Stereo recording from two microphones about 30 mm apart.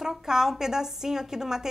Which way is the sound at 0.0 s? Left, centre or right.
Centre.